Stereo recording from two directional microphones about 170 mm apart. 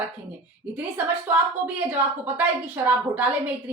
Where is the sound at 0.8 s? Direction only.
10° right (ahead or behind).